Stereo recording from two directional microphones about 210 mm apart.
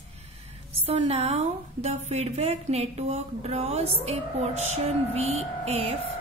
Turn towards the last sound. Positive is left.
turn(degrees=-30)  # may be behind; listen again after turning